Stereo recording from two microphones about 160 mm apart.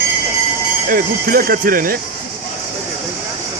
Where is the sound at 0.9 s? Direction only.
65° right (ahead or behind).